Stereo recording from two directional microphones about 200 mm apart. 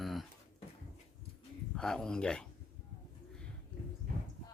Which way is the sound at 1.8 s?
5° left (ahead or behind).